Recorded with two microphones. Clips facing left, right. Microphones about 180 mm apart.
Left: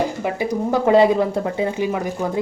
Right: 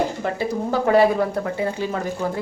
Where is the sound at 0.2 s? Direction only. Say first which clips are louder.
Left 2 dB; 15° left (ahead or behind).